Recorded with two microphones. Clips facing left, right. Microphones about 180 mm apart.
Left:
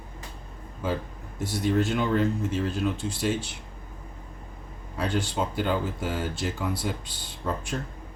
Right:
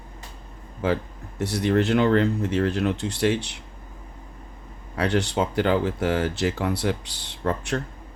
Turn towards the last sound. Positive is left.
turn(degrees=-75)  # may be behind; listen again after turning